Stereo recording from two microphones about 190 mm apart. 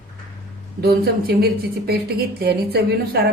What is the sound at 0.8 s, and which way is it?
A woman's voice, 55° right (ahead or behind).